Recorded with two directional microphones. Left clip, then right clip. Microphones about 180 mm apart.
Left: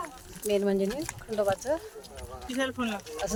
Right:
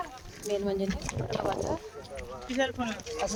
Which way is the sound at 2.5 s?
70° left (ahead or behind).